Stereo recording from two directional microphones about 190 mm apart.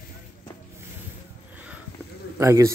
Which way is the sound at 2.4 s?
15° right (ahead or behind).